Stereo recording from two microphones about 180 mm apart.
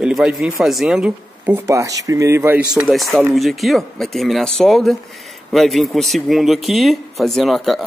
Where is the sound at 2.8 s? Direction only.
Centre (ahead or behind).